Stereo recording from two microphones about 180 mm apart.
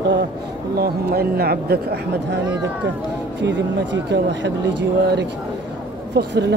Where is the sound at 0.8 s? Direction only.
60° right (ahead or behind).